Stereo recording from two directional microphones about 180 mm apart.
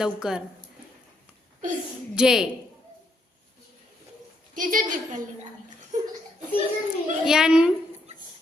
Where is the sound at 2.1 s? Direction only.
5° right (ahead or behind).